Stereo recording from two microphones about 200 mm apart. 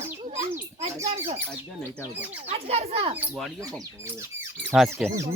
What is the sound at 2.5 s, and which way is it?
Speech, 30° right (ahead or behind).